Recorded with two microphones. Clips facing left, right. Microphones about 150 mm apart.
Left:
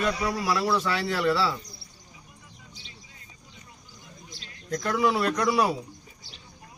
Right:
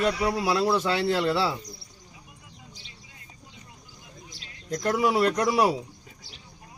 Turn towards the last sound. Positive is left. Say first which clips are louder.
# right 2 dB
turn(degrees=-20)  # may be behind; listen again after turning